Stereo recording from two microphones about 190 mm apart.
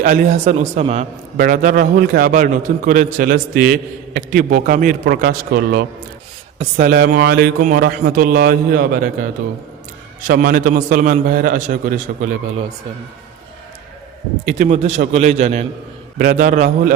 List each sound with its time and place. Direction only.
0.0 s a man's voice: 45° right (ahead or behind)
1.4 s a man's voice: 50° right (ahead or behind)
10.2 s a man's voice: 45° right (ahead or behind)
14.4 s a man's voice: 40° right (ahead or behind)
16.1 s a man's voice: 50° right (ahead or behind)